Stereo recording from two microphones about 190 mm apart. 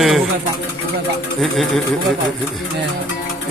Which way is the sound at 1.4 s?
Centre (ahead or behind).